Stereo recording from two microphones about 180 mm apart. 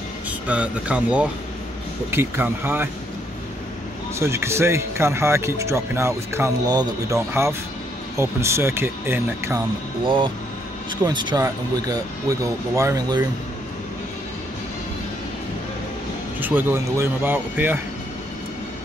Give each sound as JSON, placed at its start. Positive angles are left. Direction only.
{"t": 0.5, "sound": "speech", "side_deg": -5}
{"t": 4.2, "sound": "speech", "side_deg": -15}
{"t": 10.0, "sound": "speech", "side_deg": -30}
{"t": 16.3, "sound": "speech", "side_deg": -10}